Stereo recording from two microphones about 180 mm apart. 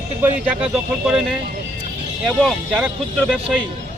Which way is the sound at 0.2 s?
10° right (ahead or behind).